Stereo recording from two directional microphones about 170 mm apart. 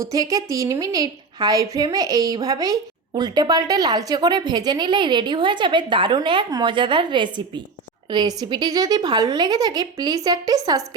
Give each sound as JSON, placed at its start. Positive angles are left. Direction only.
{"t": 0.0, "sound": "a woman's voice", "side_deg": -20}